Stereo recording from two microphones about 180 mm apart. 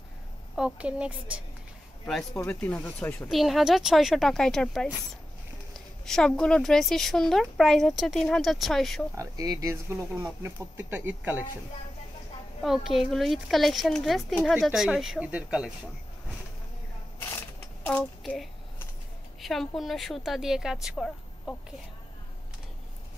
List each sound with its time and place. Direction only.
0.6 s speech: 5° right (ahead or behind)
2.3 s speech: 10° left (ahead or behind)
9.1 s speech: 20° right (ahead or behind)
12.6 s speech: centre (ahead or behind)
17.2 s a sound: 10° left (ahead or behind)
19.4 s speech: centre (ahead or behind)